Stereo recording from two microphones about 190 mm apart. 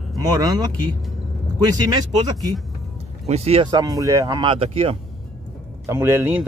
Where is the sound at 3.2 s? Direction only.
35° right (ahead or behind).